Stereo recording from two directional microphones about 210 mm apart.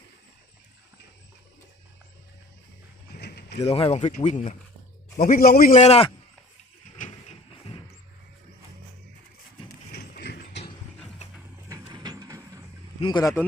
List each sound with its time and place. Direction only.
3.2 s a sound: 50° left (ahead or behind)
3.6 s speech: 25° left (ahead or behind); by 5.7 s 45° left (ahead or behind)
5.7 s speech: 30° left (ahead or behind)
6.9 s vehicle: 35° left (ahead or behind)
9.9 s clip-clop: 50° left (ahead or behind)
11.7 s vehicle: 20° right (ahead or behind)
13.0 s speech: 20° left (ahead or behind)